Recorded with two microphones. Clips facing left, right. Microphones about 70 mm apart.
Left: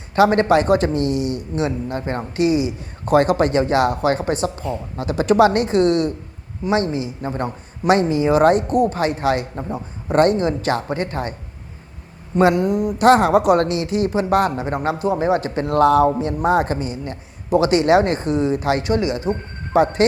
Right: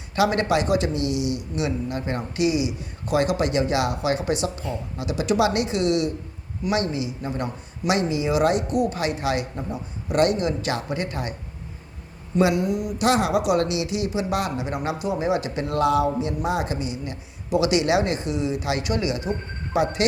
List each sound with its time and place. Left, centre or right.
0.2 s a man's voice: left
12.4 s a man's voice: left